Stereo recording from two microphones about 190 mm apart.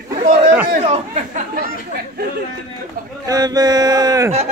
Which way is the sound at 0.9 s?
35° right (ahead or behind).